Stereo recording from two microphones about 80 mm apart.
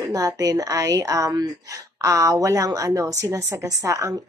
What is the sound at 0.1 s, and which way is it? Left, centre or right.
A woman's voice, right.